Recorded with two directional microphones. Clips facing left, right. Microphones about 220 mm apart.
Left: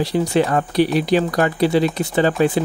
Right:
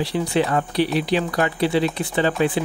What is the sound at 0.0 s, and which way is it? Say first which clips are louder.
Speech: left 3 dB; 40° left (ahead or behind).